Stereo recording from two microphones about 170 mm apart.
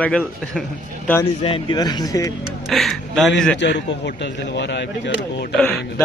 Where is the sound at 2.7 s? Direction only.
Centre (ahead or behind).